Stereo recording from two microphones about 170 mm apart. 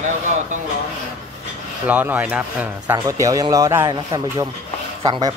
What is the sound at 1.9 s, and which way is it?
Speech, 10° right (ahead or behind).